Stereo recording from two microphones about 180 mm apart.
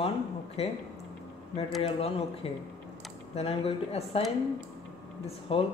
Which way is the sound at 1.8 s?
35° left (ahead or behind).